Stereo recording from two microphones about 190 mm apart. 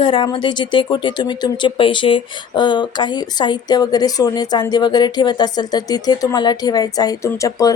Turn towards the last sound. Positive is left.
turn(degrees=15)  # may be behind; listen again after turning